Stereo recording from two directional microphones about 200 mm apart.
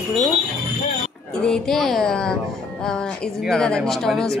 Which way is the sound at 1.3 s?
5° left (ahead or behind).